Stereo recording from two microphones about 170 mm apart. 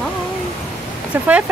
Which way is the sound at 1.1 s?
10° right (ahead or behind).